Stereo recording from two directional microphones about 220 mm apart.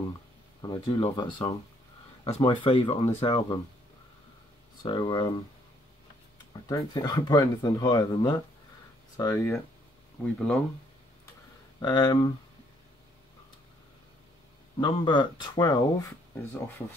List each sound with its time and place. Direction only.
0.6 s speech: 20° left (ahead or behind)
4.8 s speech: 20° left (ahead or behind)
6.7 s speech: 15° left (ahead or behind)
11.8 s speech: 20° left (ahead or behind)
14.8 s speech: 20° left (ahead or behind)